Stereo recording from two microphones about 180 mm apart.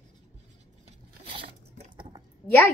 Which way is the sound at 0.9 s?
30° right (ahead or behind).